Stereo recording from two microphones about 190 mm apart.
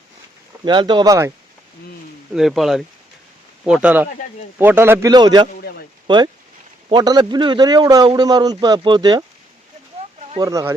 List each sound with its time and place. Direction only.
0.6 s a man's voice: 25° right (ahead or behind)
2.3 s a man's voice: centre (ahead or behind); by 9.2 s 20° right (ahead or behind)
10.3 s a man's voice: 20° right (ahead or behind)